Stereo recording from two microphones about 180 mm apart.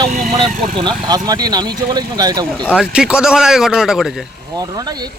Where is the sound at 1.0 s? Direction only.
20° right (ahead or behind).